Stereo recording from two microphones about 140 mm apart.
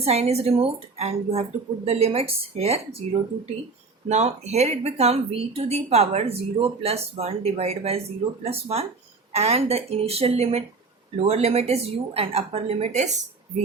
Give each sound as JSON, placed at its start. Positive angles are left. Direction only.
{"t": 0.0, "sound": "speech", "side_deg": -50}